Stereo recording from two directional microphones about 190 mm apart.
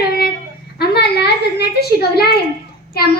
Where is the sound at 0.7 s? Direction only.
60° left (ahead or behind).